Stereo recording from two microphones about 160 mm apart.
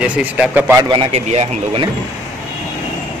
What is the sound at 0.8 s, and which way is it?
Speech, 30° right (ahead or behind).